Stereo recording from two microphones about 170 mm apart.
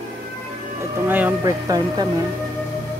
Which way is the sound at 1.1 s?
15° right (ahead or behind).